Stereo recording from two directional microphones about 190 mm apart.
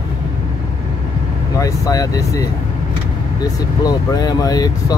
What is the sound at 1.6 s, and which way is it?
Speech, 15° left (ahead or behind).